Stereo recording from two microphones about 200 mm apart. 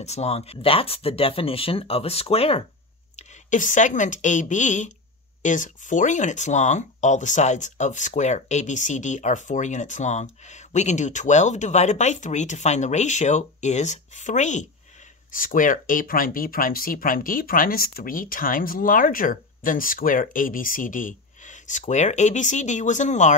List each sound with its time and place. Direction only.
0.0 s speech: 35° left (ahead or behind)